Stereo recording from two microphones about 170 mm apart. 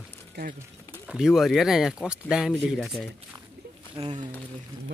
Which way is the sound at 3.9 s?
30° right (ahead or behind).